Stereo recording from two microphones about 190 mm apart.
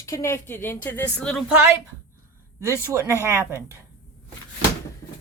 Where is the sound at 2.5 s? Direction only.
15° right (ahead or behind).